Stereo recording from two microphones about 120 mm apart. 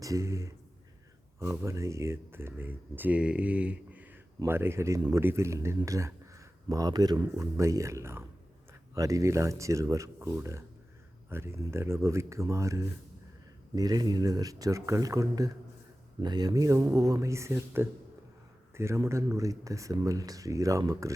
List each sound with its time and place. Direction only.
0.0 s speech: 25° right (ahead or behind)
4.9 s speech: 35° right (ahead or behind)
5.2 s speech: 20° right (ahead or behind)